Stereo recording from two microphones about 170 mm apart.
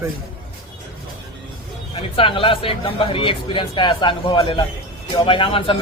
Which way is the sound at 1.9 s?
30° left (ahead or behind).